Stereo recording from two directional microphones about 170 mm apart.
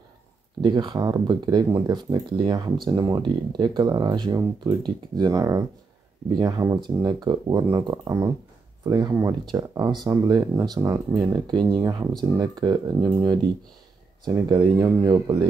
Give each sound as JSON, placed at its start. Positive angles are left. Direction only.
{"t": 0.6, "sound": "speech", "side_deg": -25}